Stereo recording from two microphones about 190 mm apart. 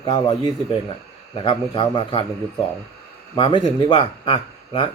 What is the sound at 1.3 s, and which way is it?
Speech, 25° left (ahead or behind).